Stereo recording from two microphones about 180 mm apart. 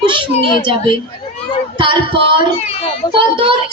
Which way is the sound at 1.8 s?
30° right (ahead or behind).